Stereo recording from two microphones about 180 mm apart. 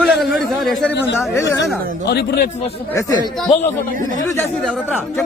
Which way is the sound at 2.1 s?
65° left (ahead or behind).